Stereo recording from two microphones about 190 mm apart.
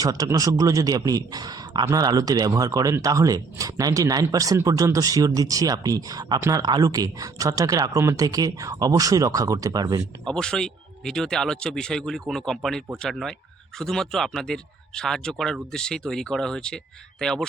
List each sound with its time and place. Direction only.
0.0 s a man's voice: 20° right (ahead or behind)
10.2 s speech: 5° left (ahead or behind)